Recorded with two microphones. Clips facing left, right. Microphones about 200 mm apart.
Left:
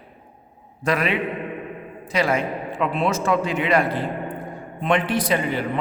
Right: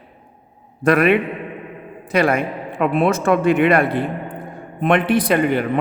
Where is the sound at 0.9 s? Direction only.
55° right (ahead or behind).